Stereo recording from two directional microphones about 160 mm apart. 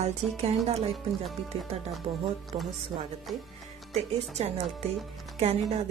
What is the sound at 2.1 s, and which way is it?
Speech, 35° right (ahead or behind).